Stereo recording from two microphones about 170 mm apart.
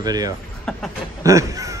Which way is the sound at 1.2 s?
20° right (ahead or behind).